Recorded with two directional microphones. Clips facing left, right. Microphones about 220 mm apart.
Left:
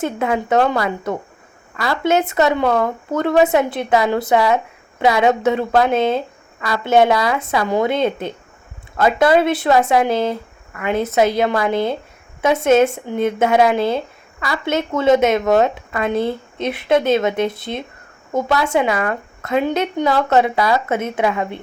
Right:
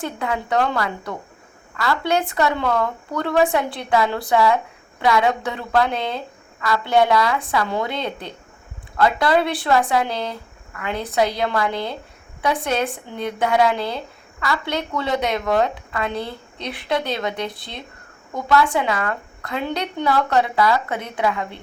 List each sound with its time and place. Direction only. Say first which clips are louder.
0.0 s a woman's voice: left 6 dB; 20° left (ahead or behind)
11.7 s speech: left 8 dB; 50° left (ahead or behind)
12.4 s a woman's voice: left 8 dB; 20° left (ahead or behind)